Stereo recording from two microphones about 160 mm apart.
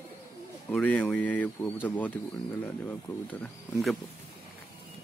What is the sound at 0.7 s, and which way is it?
Speech, 10° left (ahead or behind).